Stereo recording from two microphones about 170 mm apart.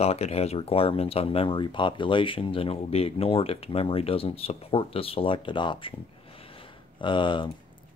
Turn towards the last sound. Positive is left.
turn(degrees=30)  # may be behind; listen again after turning